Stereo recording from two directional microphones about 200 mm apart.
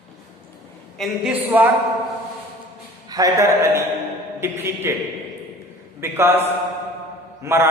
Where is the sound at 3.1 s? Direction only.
15° right (ahead or behind).